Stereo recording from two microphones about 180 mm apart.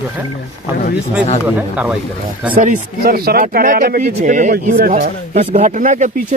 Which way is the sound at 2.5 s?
50° right (ahead or behind).